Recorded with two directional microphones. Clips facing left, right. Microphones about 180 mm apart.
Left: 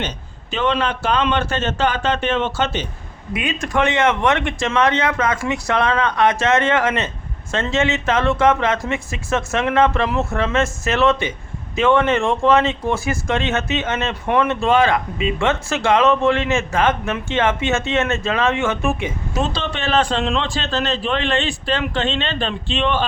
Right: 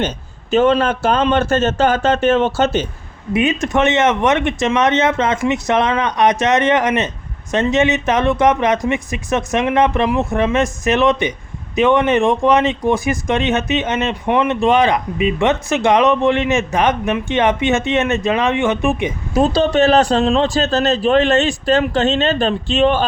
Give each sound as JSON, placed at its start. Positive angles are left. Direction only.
{"t": 0.5, "sound": "speech", "side_deg": -45}
{"t": 3.3, "sound": "speech", "side_deg": -25}
{"t": 19.4, "sound": "a man's voice", "side_deg": -45}